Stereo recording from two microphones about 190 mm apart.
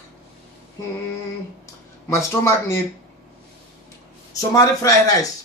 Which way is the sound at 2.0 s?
15° left (ahead or behind).